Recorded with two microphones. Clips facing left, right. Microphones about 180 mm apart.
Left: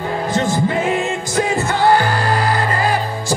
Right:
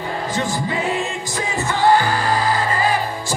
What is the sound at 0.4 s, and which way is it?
Music, 45° left (ahead or behind).